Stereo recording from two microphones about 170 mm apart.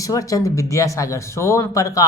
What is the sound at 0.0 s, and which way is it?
A man's voice, 20° left (ahead or behind).